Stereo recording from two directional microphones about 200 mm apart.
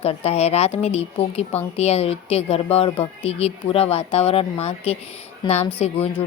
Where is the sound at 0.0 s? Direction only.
30° left (ahead or behind).